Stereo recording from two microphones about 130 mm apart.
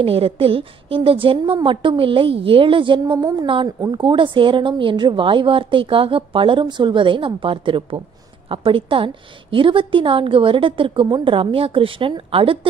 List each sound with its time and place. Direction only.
0.0 s a woman's voice: 45° right (ahead or behind)